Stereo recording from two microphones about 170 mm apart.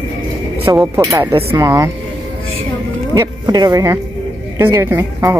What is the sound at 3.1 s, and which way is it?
Speech, 25° right (ahead or behind).